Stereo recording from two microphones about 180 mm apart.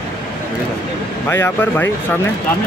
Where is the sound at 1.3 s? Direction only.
10° left (ahead or behind).